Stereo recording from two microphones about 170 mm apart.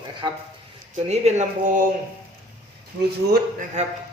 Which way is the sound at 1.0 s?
40° right (ahead or behind).